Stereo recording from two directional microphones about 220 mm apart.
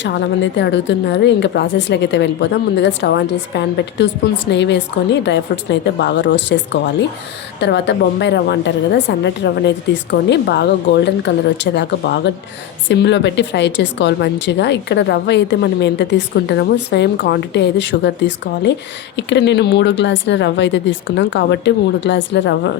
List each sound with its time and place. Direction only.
0.0 s speech: 55° left (ahead or behind)